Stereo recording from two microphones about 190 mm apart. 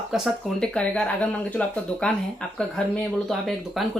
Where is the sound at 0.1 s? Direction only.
Centre (ahead or behind).